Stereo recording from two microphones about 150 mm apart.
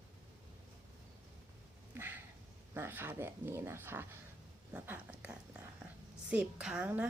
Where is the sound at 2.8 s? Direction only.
15° right (ahead or behind).